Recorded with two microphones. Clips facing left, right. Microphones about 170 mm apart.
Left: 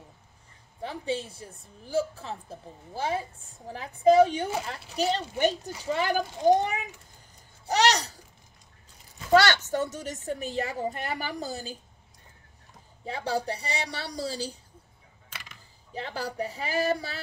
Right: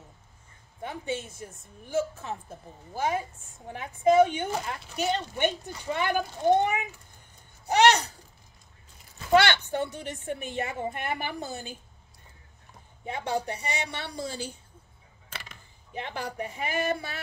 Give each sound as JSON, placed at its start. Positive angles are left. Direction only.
{"t": 0.8, "sound": "a woman's voice", "side_deg": 30}
{"t": 7.6, "sound": "a sound", "side_deg": 35}
{"t": 9.3, "sound": "a woman's voice", "side_deg": 40}
{"t": 13.0, "sound": "a woman's voice", "side_deg": 35}
{"t": 15.9, "sound": "a woman's voice", "side_deg": 35}